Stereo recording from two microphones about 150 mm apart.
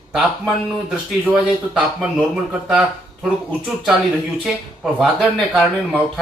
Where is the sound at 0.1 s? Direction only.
5° right (ahead or behind).